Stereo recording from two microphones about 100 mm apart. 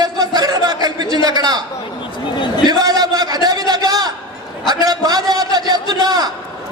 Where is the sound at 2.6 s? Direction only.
40° right (ahead or behind).